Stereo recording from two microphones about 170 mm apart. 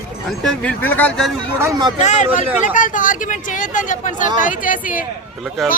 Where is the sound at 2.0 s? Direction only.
45° left (ahead or behind).